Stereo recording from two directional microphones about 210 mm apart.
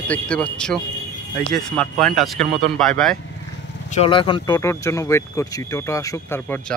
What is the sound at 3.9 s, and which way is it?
Speech, 25° left (ahead or behind).